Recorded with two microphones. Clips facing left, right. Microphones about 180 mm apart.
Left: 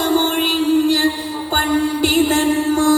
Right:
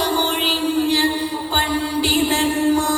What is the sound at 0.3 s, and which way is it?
Music, 45° left (ahead or behind).